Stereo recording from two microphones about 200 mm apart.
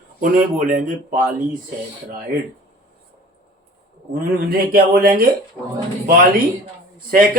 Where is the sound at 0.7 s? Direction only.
40° right (ahead or behind).